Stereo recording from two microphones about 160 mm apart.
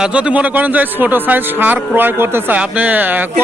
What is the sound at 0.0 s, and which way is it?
A man's voice, 5° right (ahead or behind).